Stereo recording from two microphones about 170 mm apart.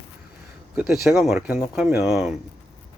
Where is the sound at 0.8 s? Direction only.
Centre (ahead or behind).